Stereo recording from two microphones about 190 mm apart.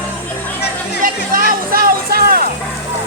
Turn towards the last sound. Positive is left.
turn(degrees=-55)  # may be behind; listen again after turning